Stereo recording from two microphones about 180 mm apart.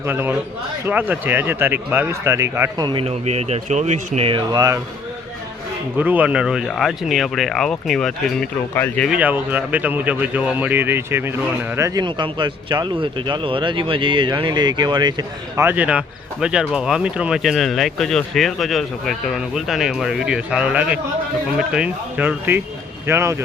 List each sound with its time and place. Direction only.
0.0 s speech: 10° right (ahead or behind)
6.0 s speech: 10° right (ahead or behind); by 9.0 s 10° left (ahead or behind)
9.0 s speech: 10° right (ahead or behind); by 15.1 s 25° right (ahead or behind)
15.5 s speech: 10° right (ahead or behind)